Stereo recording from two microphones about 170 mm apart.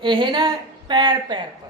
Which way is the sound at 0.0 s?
30° right (ahead or behind).